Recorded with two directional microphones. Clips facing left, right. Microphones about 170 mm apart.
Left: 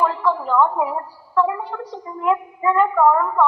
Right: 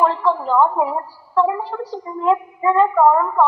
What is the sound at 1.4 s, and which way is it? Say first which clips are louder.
A woman's voice: right 2 dB; 30° right (ahead or behind).